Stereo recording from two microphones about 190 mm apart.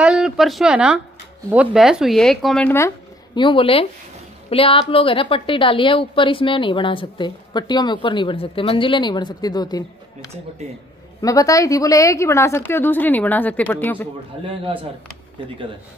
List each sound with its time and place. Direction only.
0.0 s speech: centre (ahead or behind)
3.3 s a woman's voice: 25° left (ahead or behind)
11.1 s a woman's voice: 20° left (ahead or behind)
14.4 s a man's voice: 25° right (ahead or behind)